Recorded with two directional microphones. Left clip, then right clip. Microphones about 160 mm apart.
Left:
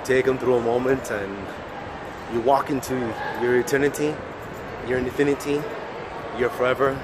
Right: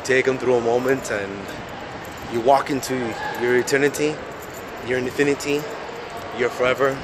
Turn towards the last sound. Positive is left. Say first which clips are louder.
# right 2 dB
turn(degrees=-5)  # may be behind; listen again after turning